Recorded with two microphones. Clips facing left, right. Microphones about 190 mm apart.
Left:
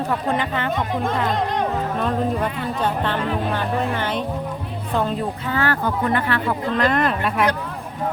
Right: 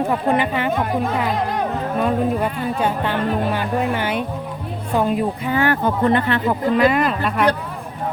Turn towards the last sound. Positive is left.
turn(degrees=0)  # may be behind; listen again after turning